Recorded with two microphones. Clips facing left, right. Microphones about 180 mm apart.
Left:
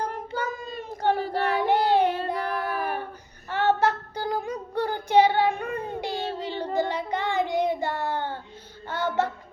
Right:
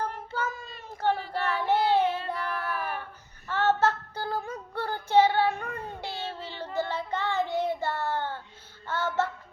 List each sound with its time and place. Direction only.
0.3 s child singing: 15° left (ahead or behind)
0.8 s a sound: 15° left (ahead or behind)
1.1 s child singing: 40° left (ahead or behind)
1.5 s child singing: 15° left (ahead or behind)
2.4 s child singing: 40° left (ahead or behind)
3.5 s child singing: 15° left (ahead or behind)
8.9 s music: 15° left (ahead or behind)